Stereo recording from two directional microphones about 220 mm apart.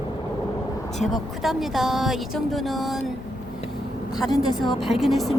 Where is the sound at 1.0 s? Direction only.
Centre (ahead or behind).